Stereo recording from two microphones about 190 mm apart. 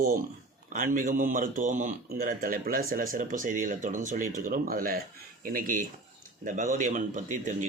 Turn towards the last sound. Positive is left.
turn(degrees=-40)  # may be behind; listen again after turning